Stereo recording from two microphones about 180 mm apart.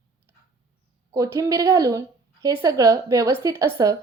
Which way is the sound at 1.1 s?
15° right (ahead or behind).